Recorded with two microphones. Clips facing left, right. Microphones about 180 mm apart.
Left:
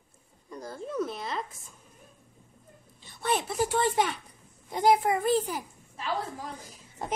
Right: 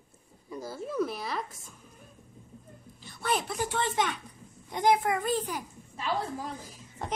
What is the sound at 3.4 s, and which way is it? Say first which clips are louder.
Speech: left 4 dB; centre (ahead or behind).